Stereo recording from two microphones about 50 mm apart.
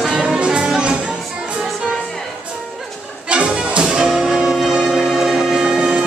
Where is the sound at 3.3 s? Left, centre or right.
Right.